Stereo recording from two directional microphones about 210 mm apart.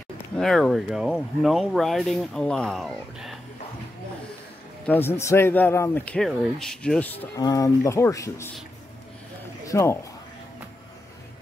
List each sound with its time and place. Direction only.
0.4 s speech: centre (ahead or behind)
4.8 s a man's voice: 10° left (ahead or behind)
7.2 s speech: 20° left (ahead or behind)
9.7 s speech: 15° left (ahead or behind)